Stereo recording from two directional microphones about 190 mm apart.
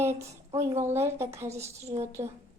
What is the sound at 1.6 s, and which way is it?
Speech, 35° right (ahead or behind).